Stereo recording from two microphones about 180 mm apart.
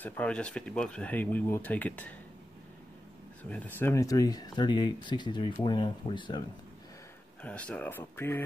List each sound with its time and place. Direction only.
0.0 s speech: 10° left (ahead or behind)
3.4 s speech: 10° left (ahead or behind); by 6.4 s 25° left (ahead or behind)
7.4 s speech: 5° left (ahead or behind)